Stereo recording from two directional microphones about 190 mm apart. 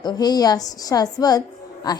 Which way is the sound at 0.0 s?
20° left (ahead or behind).